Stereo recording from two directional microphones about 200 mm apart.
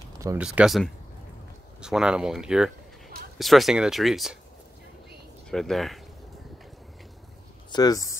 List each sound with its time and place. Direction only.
0.4 s speech: 5° right (ahead or behind)
5.5 s speech: centre (ahead or behind)
7.7 s speech: 20° left (ahead or behind)